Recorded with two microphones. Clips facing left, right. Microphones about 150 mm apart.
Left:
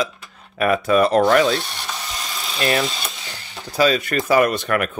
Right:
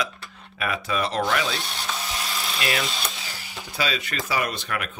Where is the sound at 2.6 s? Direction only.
40° left (ahead or behind).